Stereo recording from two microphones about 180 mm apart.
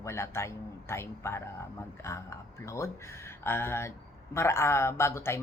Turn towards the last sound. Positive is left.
turn(degrees=15)  # may be behind; listen again after turning